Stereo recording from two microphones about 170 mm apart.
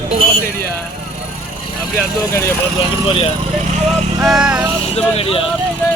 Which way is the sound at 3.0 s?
35° left (ahead or behind).